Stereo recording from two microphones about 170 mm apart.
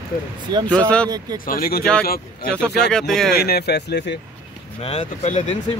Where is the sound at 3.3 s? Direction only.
65° left (ahead or behind).